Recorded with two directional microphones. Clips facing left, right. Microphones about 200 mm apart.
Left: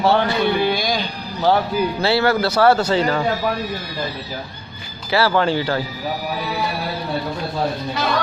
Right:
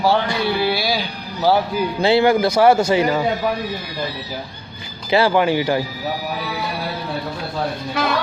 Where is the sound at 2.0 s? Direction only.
15° right (ahead or behind).